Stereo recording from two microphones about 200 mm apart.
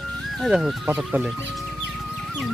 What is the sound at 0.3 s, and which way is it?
Speech, centre (ahead or behind).